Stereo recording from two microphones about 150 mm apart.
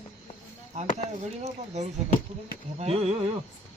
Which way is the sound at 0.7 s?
50° right (ahead or behind).